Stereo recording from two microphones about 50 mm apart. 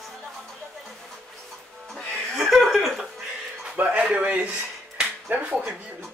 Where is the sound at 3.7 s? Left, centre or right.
Right.